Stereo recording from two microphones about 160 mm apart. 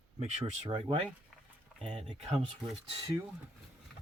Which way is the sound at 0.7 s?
35° right (ahead or behind).